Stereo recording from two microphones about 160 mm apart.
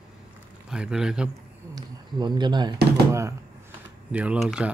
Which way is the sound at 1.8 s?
25° right (ahead or behind).